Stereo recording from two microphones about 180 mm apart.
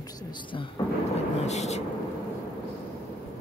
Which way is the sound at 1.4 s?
40° left (ahead or behind).